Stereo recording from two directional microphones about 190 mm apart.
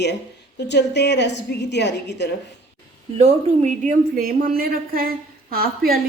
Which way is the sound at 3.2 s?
35° right (ahead or behind).